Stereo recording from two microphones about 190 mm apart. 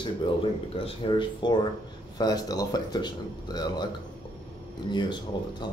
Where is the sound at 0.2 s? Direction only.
25° left (ahead or behind).